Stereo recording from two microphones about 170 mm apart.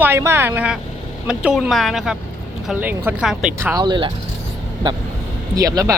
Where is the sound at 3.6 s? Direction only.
15° right (ahead or behind).